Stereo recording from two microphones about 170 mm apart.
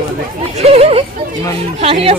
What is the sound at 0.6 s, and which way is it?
Speech, 35° right (ahead or behind).